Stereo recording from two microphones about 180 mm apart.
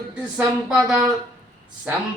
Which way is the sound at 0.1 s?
5° right (ahead or behind).